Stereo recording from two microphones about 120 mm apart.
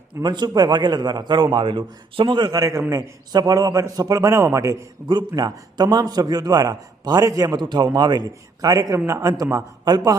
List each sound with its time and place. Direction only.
0.2 s a man's voice: 35° right (ahead or behind)